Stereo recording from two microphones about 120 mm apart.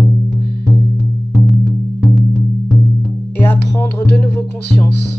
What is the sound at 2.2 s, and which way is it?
Music, 5° left (ahead or behind).